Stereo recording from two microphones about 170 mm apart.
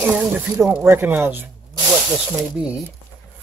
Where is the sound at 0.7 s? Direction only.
10° right (ahead or behind).